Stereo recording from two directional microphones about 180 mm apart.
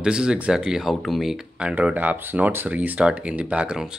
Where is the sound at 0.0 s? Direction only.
5° right (ahead or behind).